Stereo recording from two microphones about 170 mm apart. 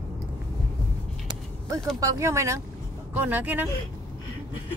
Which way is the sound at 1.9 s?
20° right (ahead or behind).